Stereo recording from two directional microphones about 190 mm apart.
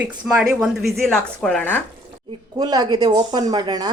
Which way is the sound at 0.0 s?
5° right (ahead or behind).